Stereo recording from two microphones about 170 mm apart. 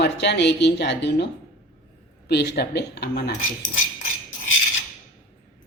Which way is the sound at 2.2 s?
70° left (ahead or behind).